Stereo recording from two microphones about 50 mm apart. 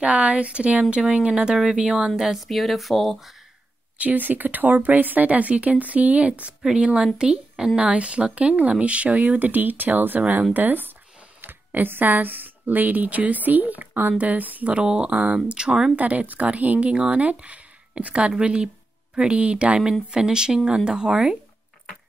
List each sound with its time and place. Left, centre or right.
0.0 s speech: right; by 3.3 s centre
4.0 s speech: right
14.7 s speech: centre
16.0 s speech: right